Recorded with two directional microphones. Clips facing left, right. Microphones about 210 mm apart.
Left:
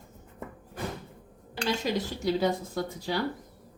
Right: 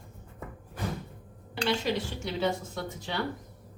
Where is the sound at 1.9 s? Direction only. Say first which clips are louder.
Left 5 dB; 35° left (ahead or behind).